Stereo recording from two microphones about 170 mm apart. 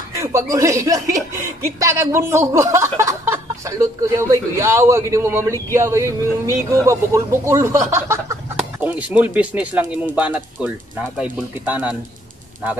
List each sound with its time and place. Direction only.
0.5 s speech: 20° right (ahead or behind)